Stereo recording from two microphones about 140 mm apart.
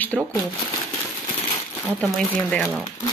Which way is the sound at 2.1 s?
10° left (ahead or behind).